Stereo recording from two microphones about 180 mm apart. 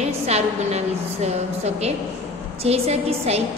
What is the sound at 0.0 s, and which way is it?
A man's voice, 35° right (ahead or behind).